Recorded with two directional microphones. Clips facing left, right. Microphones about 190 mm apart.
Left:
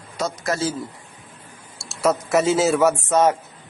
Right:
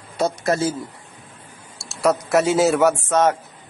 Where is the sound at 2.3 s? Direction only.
Centre (ahead or behind).